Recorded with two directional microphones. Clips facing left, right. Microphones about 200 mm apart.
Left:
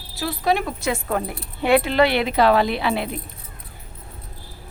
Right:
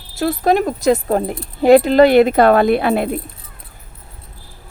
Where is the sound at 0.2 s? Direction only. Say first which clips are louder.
Right 7 dB; 45° right (ahead or behind).